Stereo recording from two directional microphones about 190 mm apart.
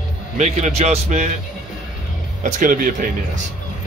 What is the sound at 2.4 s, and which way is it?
Speech, 45° right (ahead or behind).